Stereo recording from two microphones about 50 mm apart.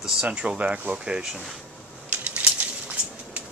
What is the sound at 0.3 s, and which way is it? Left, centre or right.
Speech, right.